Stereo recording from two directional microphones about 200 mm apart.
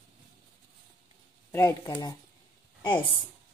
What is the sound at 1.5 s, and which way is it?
Speech, 15° left (ahead or behind).